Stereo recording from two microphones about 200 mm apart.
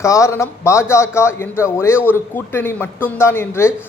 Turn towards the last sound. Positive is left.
turn(degrees=15)  # may be behind; listen again after turning